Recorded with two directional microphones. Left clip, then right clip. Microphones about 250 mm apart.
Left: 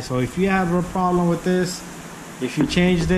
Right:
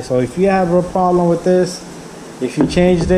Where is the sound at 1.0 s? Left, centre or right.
Centre.